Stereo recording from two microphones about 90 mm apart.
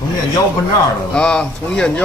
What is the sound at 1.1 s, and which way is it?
Speech, 10° left (ahead or behind).